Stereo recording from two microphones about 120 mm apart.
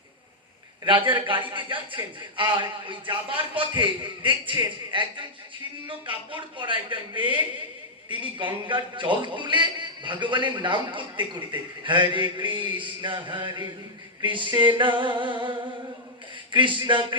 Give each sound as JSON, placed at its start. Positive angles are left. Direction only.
{"t": 0.9, "sound": "a man's voice", "side_deg": -45}